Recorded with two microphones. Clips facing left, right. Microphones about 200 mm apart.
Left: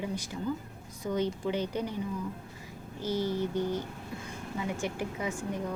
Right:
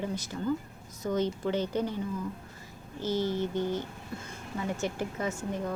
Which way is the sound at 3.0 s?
10° left (ahead or behind).